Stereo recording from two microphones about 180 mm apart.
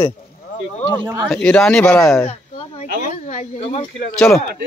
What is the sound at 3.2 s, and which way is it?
Speech, 40° left (ahead or behind).